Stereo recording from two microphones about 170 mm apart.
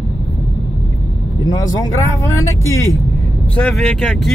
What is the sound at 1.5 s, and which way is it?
Speech, 20° left (ahead or behind).